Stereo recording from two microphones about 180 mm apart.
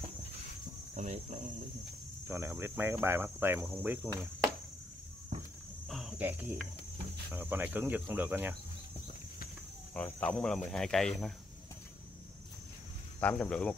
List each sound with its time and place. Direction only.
0.9 s speech: 40° right (ahead or behind)
2.2 s speech: 15° right (ahead or behind)
5.9 s a sound: centre (ahead or behind)
7.3 s speech: 10° right (ahead or behind)
9.9 s cricket: 5° left (ahead or behind)
13.2 s cricket: 5° left (ahead or behind)